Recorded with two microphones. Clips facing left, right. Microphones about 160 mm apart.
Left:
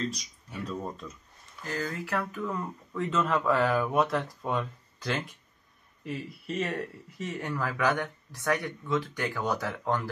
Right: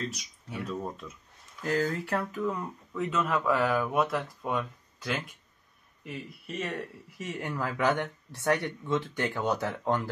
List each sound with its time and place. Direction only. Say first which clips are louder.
0.2 s speech: right 1 dB; 5° right (ahead or behind)
2.0 s speech: right 2 dB; 20° right (ahead or behind); by 6.8 s centre (ahead or behind)
7.2 s speech: left 1 dB; 15° right (ahead or behind)